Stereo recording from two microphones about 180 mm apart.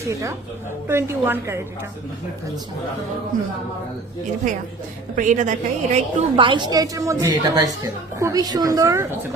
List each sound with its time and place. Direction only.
0.0 s a woman's voice: 15° right (ahead or behind)
3.3 s a woman's voice: 45° right (ahead or behind)
5.1 s a woman's voice: 45° right (ahead or behind)
6.4 s a woman's voice: 25° right (ahead or behind)